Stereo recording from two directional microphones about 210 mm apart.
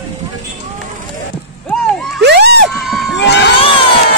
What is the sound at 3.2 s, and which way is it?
Crowd, 55° left (ahead or behind).